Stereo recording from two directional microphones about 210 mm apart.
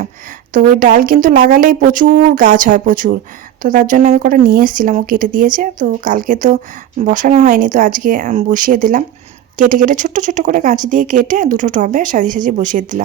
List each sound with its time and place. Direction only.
0.5 s speech: 40° right (ahead or behind)